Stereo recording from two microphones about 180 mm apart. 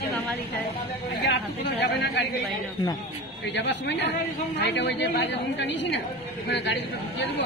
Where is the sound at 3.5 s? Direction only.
75° left (ahead or behind).